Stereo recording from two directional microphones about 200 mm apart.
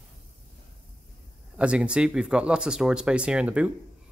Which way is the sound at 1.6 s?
5° right (ahead or behind).